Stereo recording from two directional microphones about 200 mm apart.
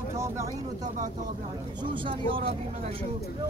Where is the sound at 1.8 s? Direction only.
25° right (ahead or behind).